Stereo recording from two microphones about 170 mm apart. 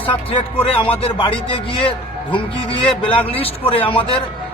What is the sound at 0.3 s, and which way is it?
Speech, 35° left (ahead or behind).